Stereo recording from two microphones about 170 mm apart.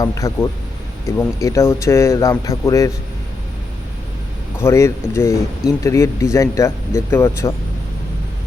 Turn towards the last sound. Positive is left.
turn(degrees=15)  # may be behind; listen again after turning